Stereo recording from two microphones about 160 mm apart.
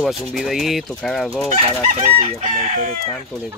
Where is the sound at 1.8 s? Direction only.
45° right (ahead or behind).